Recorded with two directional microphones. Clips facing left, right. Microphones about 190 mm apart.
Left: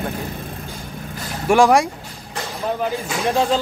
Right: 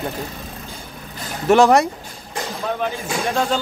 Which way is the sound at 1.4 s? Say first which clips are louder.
Right 1 dB; 10° left (ahead or behind).